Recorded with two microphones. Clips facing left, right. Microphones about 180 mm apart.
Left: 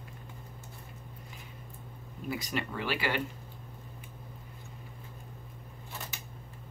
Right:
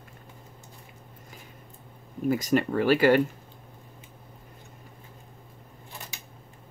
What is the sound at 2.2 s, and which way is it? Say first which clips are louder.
Speech: right 11 dB; 45° right (ahead or behind).